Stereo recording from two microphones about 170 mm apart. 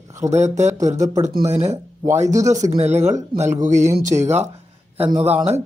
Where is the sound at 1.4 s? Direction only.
40° right (ahead or behind).